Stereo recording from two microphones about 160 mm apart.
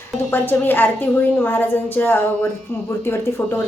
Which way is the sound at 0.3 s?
10° left (ahead or behind).